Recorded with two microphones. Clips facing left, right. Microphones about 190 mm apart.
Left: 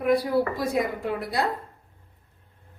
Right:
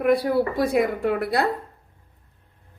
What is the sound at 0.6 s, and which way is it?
Speech, 65° right (ahead or behind).